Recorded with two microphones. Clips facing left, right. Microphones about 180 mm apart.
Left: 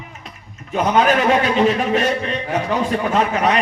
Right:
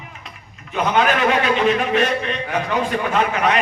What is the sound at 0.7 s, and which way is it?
A man's voice, 40° left (ahead or behind).